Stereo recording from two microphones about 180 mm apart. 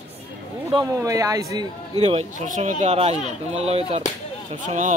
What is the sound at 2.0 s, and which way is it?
Speech, 35° right (ahead or behind).